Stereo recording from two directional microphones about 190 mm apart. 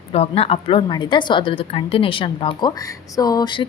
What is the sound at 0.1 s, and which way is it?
Speech, 30° left (ahead or behind).